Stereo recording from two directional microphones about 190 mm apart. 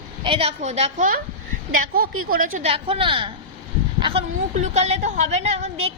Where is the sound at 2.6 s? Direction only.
30° right (ahead or behind).